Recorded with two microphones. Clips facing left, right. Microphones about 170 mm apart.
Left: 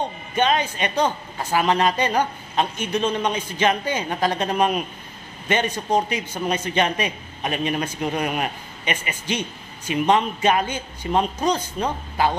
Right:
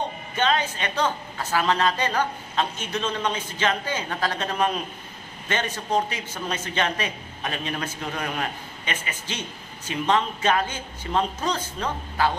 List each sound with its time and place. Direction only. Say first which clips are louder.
0.4 s a man's voice: left 3 dB; 15° left (ahead or behind)